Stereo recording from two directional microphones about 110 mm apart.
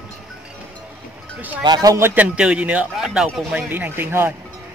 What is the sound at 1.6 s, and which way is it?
Wind chime, 35° right (ahead or behind).